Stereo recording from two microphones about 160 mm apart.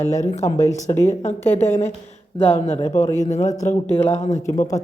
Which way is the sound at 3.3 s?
45° left (ahead or behind).